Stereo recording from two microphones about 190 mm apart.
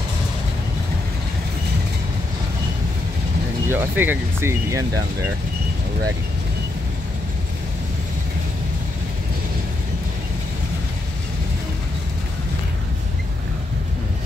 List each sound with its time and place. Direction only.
3.6 s speech: 10° right (ahead or behind)